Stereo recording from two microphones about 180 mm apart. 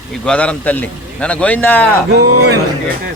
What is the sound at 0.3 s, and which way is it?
A man's voice, 5° left (ahead or behind).